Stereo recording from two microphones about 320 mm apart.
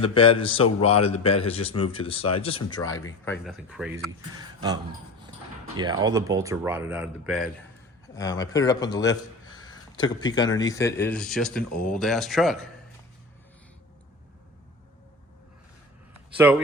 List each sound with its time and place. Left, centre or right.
0.0 s speech: centre
8.0 s a man's voice: centre
16.4 s speech: centre